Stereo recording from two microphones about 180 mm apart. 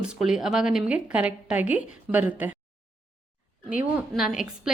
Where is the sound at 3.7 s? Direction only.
10° right (ahead or behind).